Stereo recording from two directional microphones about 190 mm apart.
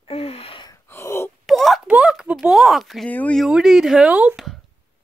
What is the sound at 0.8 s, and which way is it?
Wail, 15° left (ahead or behind).